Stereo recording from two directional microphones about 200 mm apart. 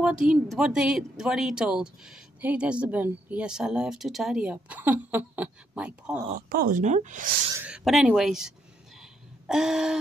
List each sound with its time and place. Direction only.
0.0 s speech: 5° right (ahead or behind)
6.3 s speech: 45° right (ahead or behind)
7.5 s speech: 5° right (ahead or behind)